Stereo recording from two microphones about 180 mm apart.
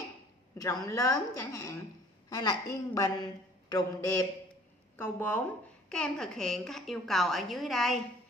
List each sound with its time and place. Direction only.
0.8 s a woman's voice: 20° left (ahead or behind); by 8.0 s centre (ahead or behind)